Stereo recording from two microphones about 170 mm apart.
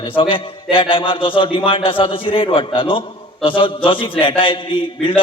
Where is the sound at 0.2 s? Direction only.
30° left (ahead or behind).